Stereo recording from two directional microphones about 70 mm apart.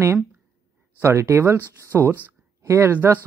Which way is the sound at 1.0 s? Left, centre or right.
Right.